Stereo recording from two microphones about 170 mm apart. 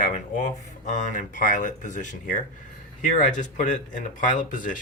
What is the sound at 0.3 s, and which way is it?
Speech, 45° left (ahead or behind).